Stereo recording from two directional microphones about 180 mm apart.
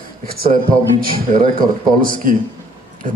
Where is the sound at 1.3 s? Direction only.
50° right (ahead or behind).